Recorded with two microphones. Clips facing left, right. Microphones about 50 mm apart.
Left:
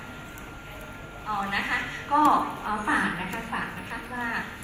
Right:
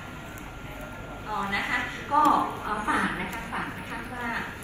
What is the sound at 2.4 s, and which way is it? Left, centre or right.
Speech, right.